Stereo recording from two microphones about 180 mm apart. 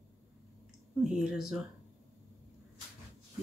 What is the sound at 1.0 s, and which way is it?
Speech, 5° right (ahead or behind).